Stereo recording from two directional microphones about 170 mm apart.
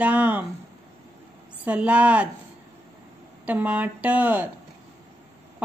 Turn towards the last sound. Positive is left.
turn(degrees=-10)  # may be behind; listen again after turning